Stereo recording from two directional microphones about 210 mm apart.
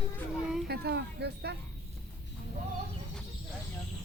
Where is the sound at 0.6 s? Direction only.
50° right (ahead or behind).